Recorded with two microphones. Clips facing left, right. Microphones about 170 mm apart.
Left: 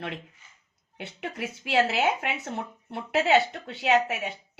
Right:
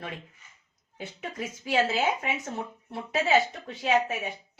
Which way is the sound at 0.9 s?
70° left (ahead or behind).